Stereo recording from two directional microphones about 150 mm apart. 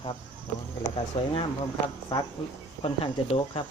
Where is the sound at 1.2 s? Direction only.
40° left (ahead or behind).